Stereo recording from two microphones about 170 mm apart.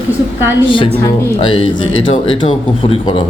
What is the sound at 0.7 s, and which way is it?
A man's voice, 30° left (ahead or behind).